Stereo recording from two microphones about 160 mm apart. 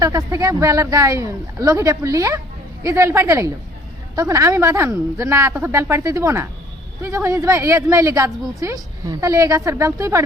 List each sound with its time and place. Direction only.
0.0 s a woman's voice: 20° right (ahead or behind)